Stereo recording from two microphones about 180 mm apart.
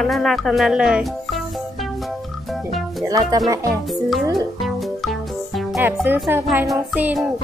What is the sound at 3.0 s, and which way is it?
Speech, 20° right (ahead or behind).